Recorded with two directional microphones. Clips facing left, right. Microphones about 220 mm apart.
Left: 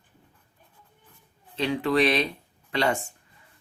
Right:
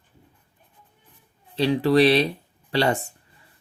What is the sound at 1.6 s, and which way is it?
Speech, 35° right (ahead or behind).